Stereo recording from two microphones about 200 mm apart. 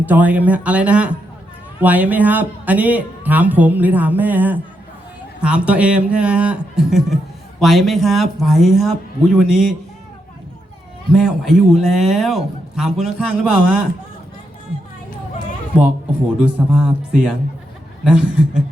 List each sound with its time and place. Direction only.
0.0 s a man's voice: 10° right (ahead or behind)
11.1 s a man's voice: centre (ahead or behind)
16.4 s a man's voice: 5° right (ahead or behind)